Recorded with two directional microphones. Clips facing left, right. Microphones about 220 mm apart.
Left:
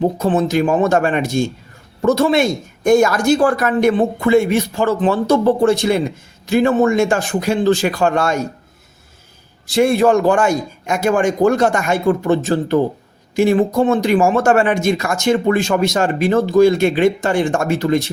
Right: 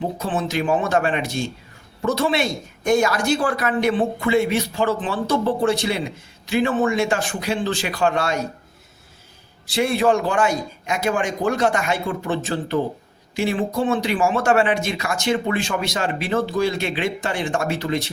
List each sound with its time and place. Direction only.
0.2 s speech: 40° left (ahead or behind)
9.6 s speech: 45° left (ahead or behind)